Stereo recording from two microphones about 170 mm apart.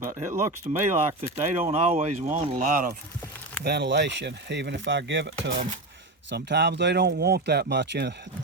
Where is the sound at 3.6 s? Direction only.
75° right (ahead or behind).